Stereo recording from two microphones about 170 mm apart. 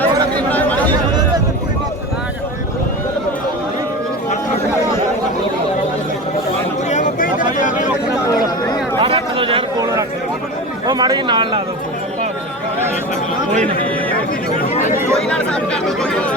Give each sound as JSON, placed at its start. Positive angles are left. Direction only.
{"t": 0.5, "sound": "chatter", "side_deg": 10}
{"t": 6.9, "sound": "a sound", "side_deg": 50}
{"t": 9.0, "sound": "chatter", "side_deg": -30}
{"t": 9.8, "sound": "a sound", "side_deg": -20}
{"t": 14.7, "sound": "chatter", "side_deg": 45}
{"t": 15.1, "sound": "chatter", "side_deg": 5}